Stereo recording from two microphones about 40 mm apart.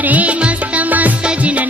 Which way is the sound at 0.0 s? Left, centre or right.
Right.